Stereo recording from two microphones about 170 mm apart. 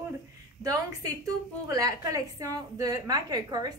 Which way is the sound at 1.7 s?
20° right (ahead or behind).